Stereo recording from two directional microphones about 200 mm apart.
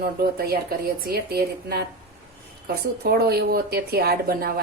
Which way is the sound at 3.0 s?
50° right (ahead or behind).